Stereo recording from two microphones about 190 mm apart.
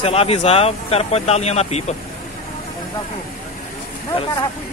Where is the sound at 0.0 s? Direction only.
30° left (ahead or behind).